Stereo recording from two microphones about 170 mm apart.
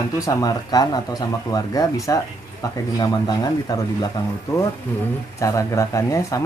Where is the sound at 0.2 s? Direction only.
20° left (ahead or behind).